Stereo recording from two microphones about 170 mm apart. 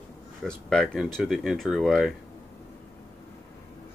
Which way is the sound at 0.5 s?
5° left (ahead or behind).